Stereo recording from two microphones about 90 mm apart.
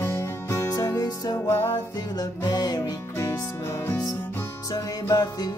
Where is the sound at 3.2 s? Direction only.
30° left (ahead or behind).